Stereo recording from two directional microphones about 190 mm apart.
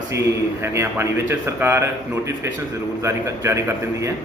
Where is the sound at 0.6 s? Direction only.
15° right (ahead or behind).